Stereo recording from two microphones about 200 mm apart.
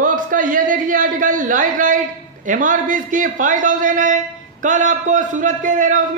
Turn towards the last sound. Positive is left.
turn(degrees=-40)  # may be behind; listen again after turning